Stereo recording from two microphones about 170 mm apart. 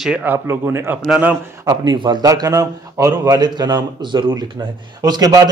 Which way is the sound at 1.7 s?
25° right (ahead or behind).